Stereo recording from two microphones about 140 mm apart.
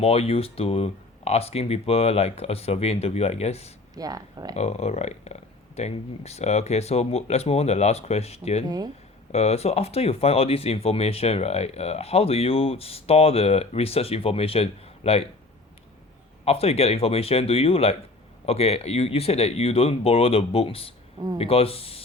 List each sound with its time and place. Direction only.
0.0 s speech: 45° left (ahead or behind)
3.9 s speech: 25° right (ahead or behind)
4.5 s speech: 50° left (ahead or behind)
8.6 s speech: 30° right (ahead or behind)
9.3 s speech: 45° left (ahead or behind)
16.4 s speech: 45° left (ahead or behind)